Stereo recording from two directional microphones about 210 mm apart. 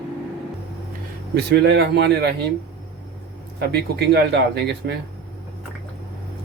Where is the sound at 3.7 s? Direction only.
50° right (ahead or behind).